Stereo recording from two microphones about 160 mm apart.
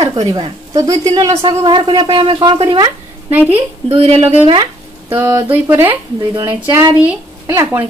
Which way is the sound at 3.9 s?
35° right (ahead or behind).